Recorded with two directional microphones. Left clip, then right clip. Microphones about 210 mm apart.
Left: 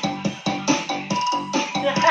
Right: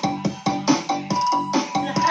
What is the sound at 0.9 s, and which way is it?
Music, 35° right (ahead or behind).